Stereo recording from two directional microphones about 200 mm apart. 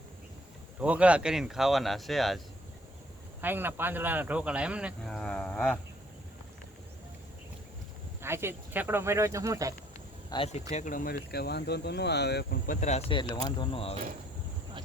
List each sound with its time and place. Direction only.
0.8 s speech: 5° right (ahead or behind)
3.4 s speech: 10° right (ahead or behind); by 5.8 s 5° left (ahead or behind)
8.2 s speech: 10° right (ahead or behind)
10.2 s speech: 25° left (ahead or behind)
10.7 s speech: 35° left (ahead or behind); by 13.7 s 20° left (ahead or behind)